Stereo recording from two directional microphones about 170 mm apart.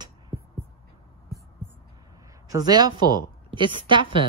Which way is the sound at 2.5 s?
25° right (ahead or behind).